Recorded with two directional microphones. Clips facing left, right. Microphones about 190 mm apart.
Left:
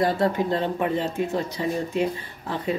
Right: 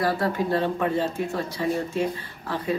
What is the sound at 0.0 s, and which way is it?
Speech, 20° left (ahead or behind).